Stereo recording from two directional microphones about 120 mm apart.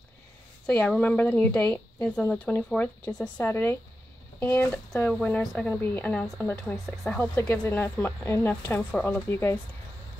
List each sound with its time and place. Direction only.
0.7 s speech: 5° left (ahead or behind)
9.3 s speech: 20° left (ahead or behind)